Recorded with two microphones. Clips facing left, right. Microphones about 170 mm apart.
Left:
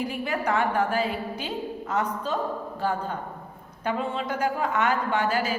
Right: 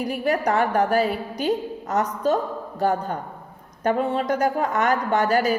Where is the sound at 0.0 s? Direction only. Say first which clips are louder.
Right 5 dB; 40° right (ahead or behind).